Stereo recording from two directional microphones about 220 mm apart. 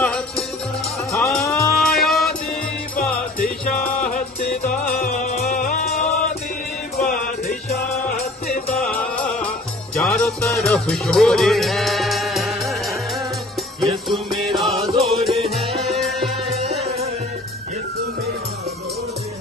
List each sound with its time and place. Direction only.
0.0 s music: 5° left (ahead or behind)
1.8 s music: centre (ahead or behind)
4.6 s music: 40° left (ahead or behind)
9.9 s music: centre (ahead or behind)
13.7 s music: centre (ahead or behind)
16.5 s music: 30° right (ahead or behind)